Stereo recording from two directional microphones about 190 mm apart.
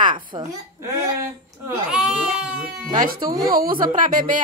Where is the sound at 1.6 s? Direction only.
5° right (ahead or behind).